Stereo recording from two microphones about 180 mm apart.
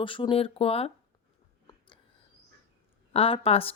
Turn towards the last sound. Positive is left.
turn(degrees=30)  # may be behind; listen again after turning